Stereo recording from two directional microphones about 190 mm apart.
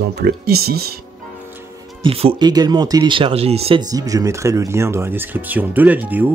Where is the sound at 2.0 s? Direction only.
30° right (ahead or behind).